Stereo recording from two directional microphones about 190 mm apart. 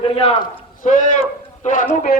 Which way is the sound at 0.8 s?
40° left (ahead or behind).